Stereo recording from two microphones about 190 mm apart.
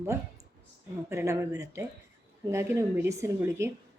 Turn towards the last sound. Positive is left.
turn(degrees=-15)  # may be behind; listen again after turning